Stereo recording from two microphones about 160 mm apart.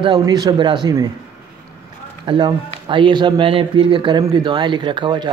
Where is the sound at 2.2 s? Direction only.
30° right (ahead or behind).